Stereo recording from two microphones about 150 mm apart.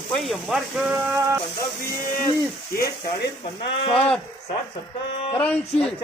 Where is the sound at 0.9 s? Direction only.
15° right (ahead or behind).